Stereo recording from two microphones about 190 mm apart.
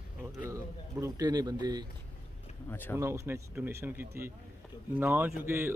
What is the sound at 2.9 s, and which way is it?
Speech, 15° right (ahead or behind).